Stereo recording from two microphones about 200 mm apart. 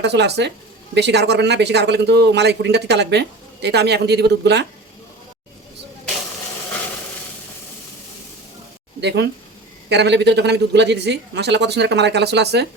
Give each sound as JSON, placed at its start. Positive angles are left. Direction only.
{"t": 0.0, "sound": "a man's voice", "side_deg": -60}
{"t": 9.0, "sound": "a man's voice", "side_deg": -60}